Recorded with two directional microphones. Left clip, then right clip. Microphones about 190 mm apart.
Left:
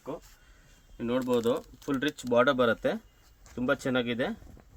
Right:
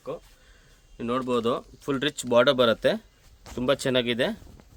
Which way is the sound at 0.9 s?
60° right (ahead or behind).